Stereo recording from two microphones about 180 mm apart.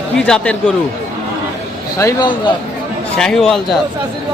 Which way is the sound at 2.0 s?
20° left (ahead or behind).